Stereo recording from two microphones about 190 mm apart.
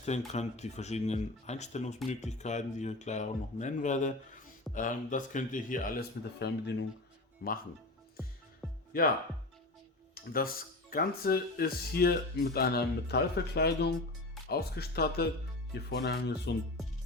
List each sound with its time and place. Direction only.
0.3 s a man's voice: 35° left (ahead or behind); by 7.6 s 55° left (ahead or behind)
8.9 s a man's voice: 50° left (ahead or behind)
10.3 s a man's voice: 50° left (ahead or behind)